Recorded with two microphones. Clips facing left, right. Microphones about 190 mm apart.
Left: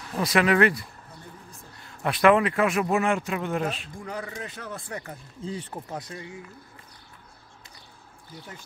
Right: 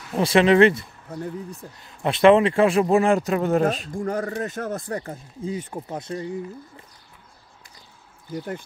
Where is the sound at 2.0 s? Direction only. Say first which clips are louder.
Right 5 dB; 25° right (ahead or behind).